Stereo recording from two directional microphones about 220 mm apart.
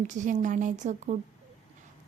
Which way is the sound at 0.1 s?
35° right (ahead or behind).